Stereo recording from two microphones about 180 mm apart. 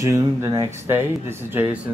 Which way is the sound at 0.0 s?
15° right (ahead or behind).